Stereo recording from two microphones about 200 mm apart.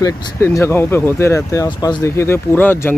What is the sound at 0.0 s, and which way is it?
Speech, 15° left (ahead or behind).